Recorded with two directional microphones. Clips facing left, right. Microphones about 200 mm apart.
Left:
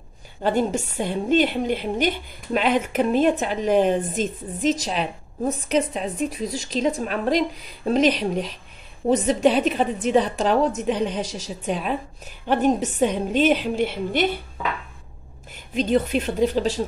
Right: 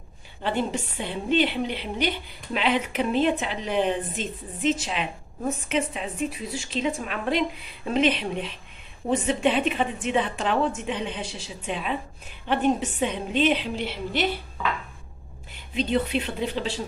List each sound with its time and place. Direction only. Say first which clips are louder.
0.4 s a woman's voice: left 5 dB; 45° left (ahead or behind)
15.5 s a woman's voice: left 4 dB; 45° left (ahead or behind)